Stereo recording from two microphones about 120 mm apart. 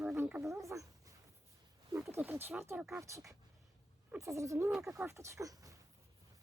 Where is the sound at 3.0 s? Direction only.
25° right (ahead or behind).